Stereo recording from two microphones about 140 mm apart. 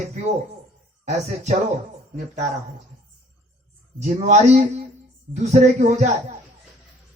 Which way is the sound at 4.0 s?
55° right (ahead or behind).